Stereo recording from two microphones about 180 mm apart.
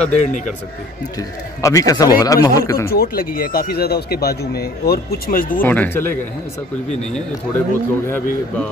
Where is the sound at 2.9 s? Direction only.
55° left (ahead or behind).